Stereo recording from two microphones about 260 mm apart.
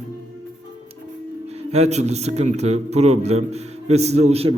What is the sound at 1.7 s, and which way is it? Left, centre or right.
A man's voice, right.